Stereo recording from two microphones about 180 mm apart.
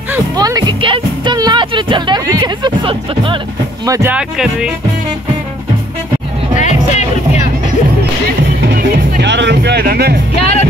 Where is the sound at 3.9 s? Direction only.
20° right (ahead or behind).